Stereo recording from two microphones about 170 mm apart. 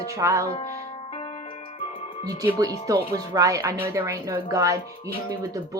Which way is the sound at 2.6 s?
20° right (ahead or behind).